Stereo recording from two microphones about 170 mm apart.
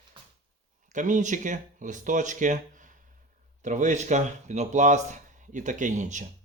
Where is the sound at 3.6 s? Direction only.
45° right (ahead or behind).